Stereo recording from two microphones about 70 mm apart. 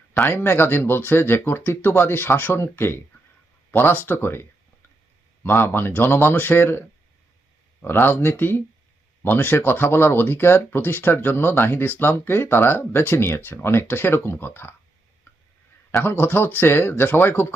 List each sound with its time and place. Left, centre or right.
0.1 s speech: left
16.0 s speech: left